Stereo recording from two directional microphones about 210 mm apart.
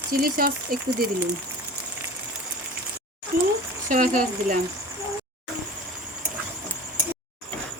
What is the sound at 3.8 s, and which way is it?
Speech, 40° right (ahead or behind).